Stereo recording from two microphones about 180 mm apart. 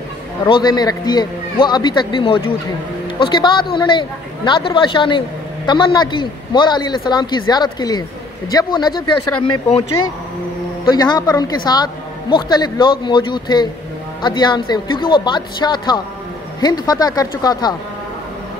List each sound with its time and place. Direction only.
0.5 s a man's voice: 25° left (ahead or behind)
10.9 s a man's voice: 25° left (ahead or behind)